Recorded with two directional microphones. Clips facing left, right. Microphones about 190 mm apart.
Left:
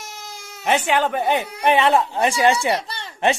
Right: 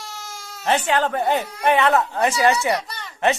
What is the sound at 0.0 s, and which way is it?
Cat, 20° left (ahead or behind).